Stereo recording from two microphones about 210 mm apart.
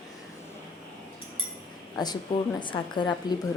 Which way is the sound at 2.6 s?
20° left (ahead or behind).